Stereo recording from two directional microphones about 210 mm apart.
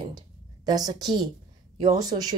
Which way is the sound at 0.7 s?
20° right (ahead or behind).